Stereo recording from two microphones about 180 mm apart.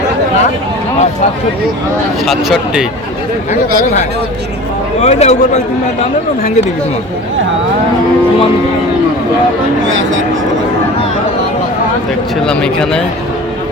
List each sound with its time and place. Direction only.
2.2 s speech: centre (ahead or behind)
4.9 s a man's voice: 40° left (ahead or behind)
12.5 s speech: 5° left (ahead or behind)